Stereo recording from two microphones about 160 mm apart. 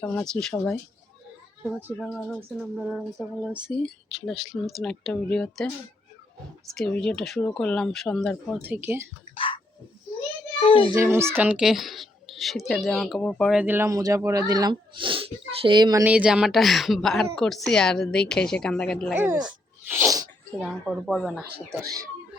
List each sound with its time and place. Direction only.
0.0 s a woman's voice: 10° left (ahead or behind)
6.7 s a woman's voice: 5° left (ahead or behind)
8.6 s speech: 10° right (ahead or behind)
9.3 s a sound: 35° left (ahead or behind)
10.7 s speech: 35° left (ahead or behind)
10.9 s a woman's voice: 15° right (ahead or behind); by 13.6 s centre (ahead or behind)
13.6 s speech: 10° right (ahead or behind)
16.0 s a woman's voice: 5° right (ahead or behind)
19.1 s speech: 15° right (ahead or behind)
19.9 s sneeze: 20° right (ahead or behind)
20.6 s a woman's voice: centre (ahead or behind)
21.7 s speech: 20° right (ahead or behind)